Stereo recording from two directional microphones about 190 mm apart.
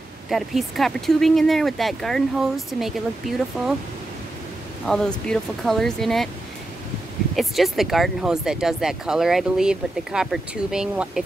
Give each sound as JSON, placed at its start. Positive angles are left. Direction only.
{"t": 0.3, "sound": "speech", "side_deg": 0}
{"t": 4.8, "sound": "speech", "side_deg": 5}
{"t": 7.3, "sound": "speech", "side_deg": 0}